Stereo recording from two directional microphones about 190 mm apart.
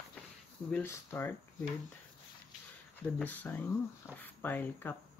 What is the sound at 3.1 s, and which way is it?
Speech, 10° left (ahead or behind).